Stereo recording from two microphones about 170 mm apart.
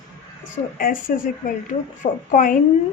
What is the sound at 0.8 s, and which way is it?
A woman's voice, 55° left (ahead or behind).